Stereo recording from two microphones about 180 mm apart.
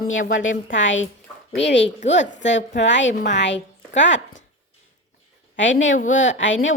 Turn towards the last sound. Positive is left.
turn(degrees=90)